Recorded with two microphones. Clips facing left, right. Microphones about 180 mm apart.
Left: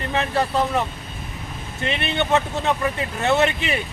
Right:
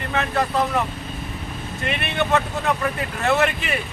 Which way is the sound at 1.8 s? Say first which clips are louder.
Left 1 dB; 25° left (ahead or behind).